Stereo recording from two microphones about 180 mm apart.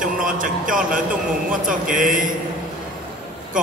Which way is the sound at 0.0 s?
50° right (ahead or behind).